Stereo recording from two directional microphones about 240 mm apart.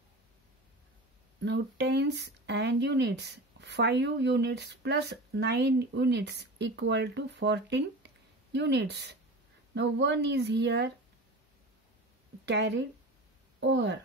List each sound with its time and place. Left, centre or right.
1.4 s speech: right
12.4 s speech: right